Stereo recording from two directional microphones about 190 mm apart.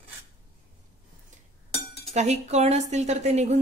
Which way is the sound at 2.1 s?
35° right (ahead or behind).